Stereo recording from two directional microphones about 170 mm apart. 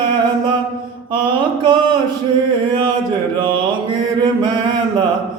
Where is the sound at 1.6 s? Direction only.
30° right (ahead or behind).